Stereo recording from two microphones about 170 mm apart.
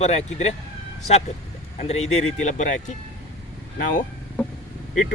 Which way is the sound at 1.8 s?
40° left (ahead or behind).